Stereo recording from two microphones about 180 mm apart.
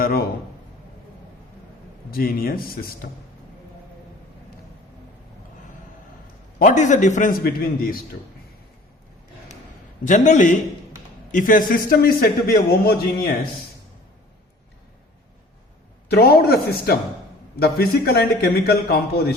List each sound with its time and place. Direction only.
0.0 s a man's voice: 60° left (ahead or behind)
2.0 s a man's voice: 55° left (ahead or behind)
6.6 s a man's voice: 45° left (ahead or behind)
10.0 s a man's voice: 45° left (ahead or behind); by 13.3 s 60° left (ahead or behind)
16.0 s a man's voice: 60° left (ahead or behind)